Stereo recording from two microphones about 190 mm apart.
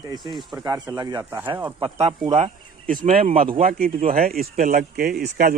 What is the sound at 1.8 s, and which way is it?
Speech, 30° right (ahead or behind).